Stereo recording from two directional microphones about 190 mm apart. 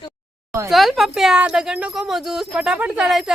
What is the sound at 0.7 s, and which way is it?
Speech, centre (ahead or behind).